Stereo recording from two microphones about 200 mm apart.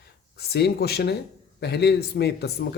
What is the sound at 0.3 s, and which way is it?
A man's voice, 55° left (ahead or behind).